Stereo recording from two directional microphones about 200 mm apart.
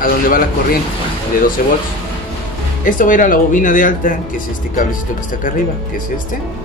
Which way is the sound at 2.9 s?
40° left (ahead or behind).